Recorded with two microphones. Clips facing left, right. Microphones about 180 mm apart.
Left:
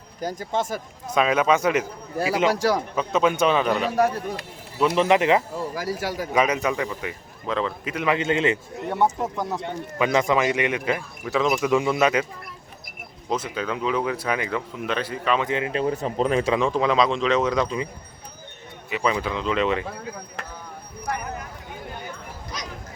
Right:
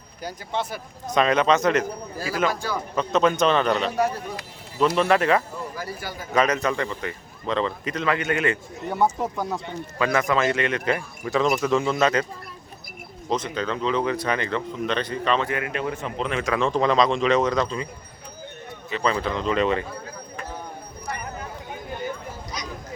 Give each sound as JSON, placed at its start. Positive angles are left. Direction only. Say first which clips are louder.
{"t": 0.2, "sound": "speech", "louder": "left 3 dB", "side_deg": 45}
{"t": 1.0, "sound": "a man's voice", "louder": "right 1 dB", "side_deg": 5}
{"t": 2.1, "sound": "speech", "louder": "left 8 dB", "side_deg": 65}
{"t": 2.5, "sound": "a man's voice", "louder": "left 6 dB", "side_deg": 90}
{"t": 2.9, "sound": "a man's voice", "louder": "right 1 dB", "side_deg": 10}
{"t": 5.7, "sound": "a man's voice", "louder": "left 6 dB", "side_deg": 90}
{"t": 6.3, "sound": "a man's voice", "louder": "right 1 dB", "side_deg": 10}
{"t": 8.0, "sound": "speech", "louder": "left 2 dB", "side_deg": 20}
{"t": 9.1, "sound": "a man's voice", "louder": "even", "side_deg": 0}
{"t": 10.0, "sound": "a man's voice", "louder": "left 1 dB", "side_deg": 20}
{"t": 13.3, "sound": "a man's voice", "louder": "right 1 dB", "side_deg": 5}
{"t": 15.4, "sound": "speech", "louder": "left 3 dB", "side_deg": 25}
{"t": 16.5, "sound": "a man's voice", "louder": "even", "side_deg": 10}
{"t": 18.9, "sound": "a man's voice", "louder": "even", "side_deg": 10}